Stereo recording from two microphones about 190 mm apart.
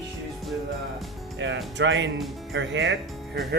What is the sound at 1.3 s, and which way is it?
Speech, 70° right (ahead or behind).